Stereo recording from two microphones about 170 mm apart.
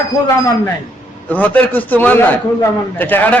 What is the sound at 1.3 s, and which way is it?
A man's voice, 10° left (ahead or behind).